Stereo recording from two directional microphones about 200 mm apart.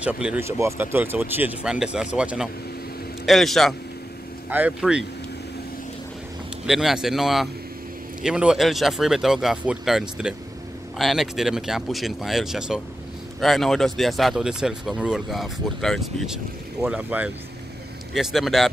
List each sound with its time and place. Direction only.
0.0 s speech: 5° right (ahead or behind)
6.6 s speech: centre (ahead or behind)